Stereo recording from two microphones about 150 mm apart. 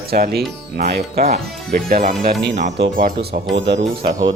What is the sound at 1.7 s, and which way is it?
Speech, 70° right (ahead or behind).